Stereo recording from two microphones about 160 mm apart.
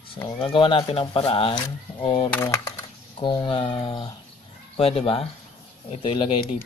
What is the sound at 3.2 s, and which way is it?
Speech, 30° left (ahead or behind).